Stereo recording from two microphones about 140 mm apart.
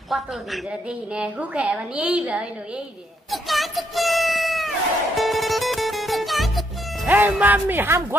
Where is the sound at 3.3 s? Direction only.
Centre (ahead or behind).